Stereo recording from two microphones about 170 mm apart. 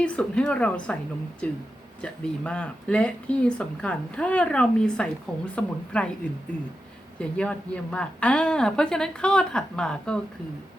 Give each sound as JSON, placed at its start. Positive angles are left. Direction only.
{"t": 0.0, "sound": "speech", "side_deg": 5}
{"t": 7.2, "sound": "speech", "side_deg": 5}